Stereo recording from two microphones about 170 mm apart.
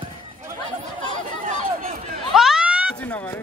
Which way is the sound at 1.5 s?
55° right (ahead or behind).